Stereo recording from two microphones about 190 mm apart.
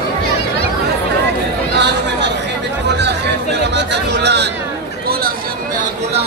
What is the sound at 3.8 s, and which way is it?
Chatter, 65° right (ahead or behind).